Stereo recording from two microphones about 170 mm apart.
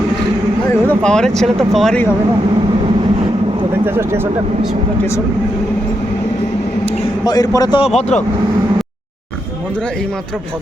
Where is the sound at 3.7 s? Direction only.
15° right (ahead or behind).